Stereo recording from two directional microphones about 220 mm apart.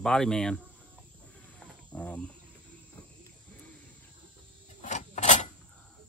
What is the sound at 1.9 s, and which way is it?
Speech, 5° left (ahead or behind).